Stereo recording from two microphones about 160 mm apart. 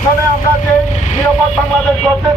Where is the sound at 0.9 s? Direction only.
50° left (ahead or behind).